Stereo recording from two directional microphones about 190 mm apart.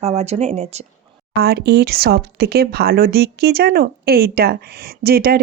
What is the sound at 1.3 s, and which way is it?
Speech, 55° right (ahead or behind).